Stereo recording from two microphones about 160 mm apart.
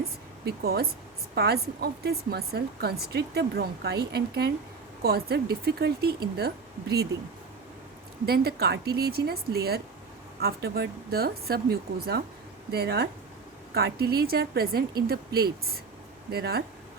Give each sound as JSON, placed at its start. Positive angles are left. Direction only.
{"t": 0.4, "sound": "a woman's voice", "side_deg": -75}
{"t": 5.0, "sound": "speech", "side_deg": -80}
{"t": 8.3, "sound": "a woman's voice", "side_deg": -80}